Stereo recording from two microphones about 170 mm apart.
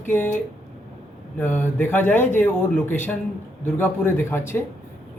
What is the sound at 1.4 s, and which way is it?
Speech, 10° left (ahead or behind).